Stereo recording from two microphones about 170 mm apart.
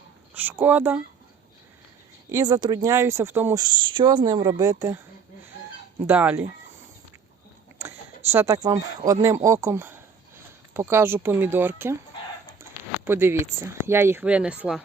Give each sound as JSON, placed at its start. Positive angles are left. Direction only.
{"t": 0.3, "sound": "speech", "side_deg": -10}
{"t": 2.3, "sound": "speech", "side_deg": -25}
{"t": 3.6, "sound": "speech", "side_deg": -30}
{"t": 6.0, "sound": "speech", "side_deg": -10}
{"t": 7.8, "sound": "speech", "side_deg": -15}
{"t": 13.1, "sound": "speech", "side_deg": -15}